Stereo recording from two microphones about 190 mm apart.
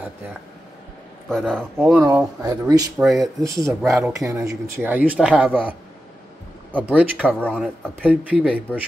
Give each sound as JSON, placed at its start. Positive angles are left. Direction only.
{"t": 1.3, "sound": "speech", "side_deg": 0}
{"t": 2.0, "sound": "speech", "side_deg": -15}
{"t": 3.0, "sound": "speech", "side_deg": 0}
{"t": 3.3, "sound": "speech", "side_deg": -15}
{"t": 6.8, "sound": "speech", "side_deg": -5}
{"t": 7.4, "sound": "speech", "side_deg": 5}
{"t": 8.1, "sound": "speech", "side_deg": -10}